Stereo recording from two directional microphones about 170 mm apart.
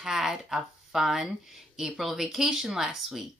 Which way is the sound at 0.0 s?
Centre (ahead or behind).